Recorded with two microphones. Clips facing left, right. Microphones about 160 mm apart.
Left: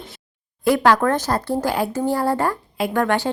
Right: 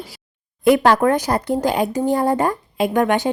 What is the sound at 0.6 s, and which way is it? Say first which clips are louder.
Speech: right 3 dB; 20° right (ahead or behind).